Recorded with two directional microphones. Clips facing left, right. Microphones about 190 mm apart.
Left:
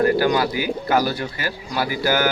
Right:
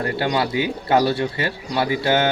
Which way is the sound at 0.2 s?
25° right (ahead or behind).